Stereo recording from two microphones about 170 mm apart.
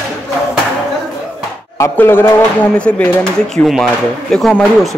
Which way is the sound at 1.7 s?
15° left (ahead or behind).